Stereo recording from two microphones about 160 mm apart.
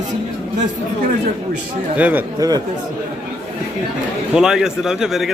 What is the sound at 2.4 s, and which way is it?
Speech, 25° right (ahead or behind).